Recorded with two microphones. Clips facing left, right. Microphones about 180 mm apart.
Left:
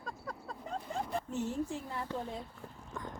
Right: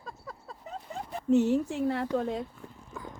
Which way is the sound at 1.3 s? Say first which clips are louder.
Right 17 dB; 75° right (ahead or behind).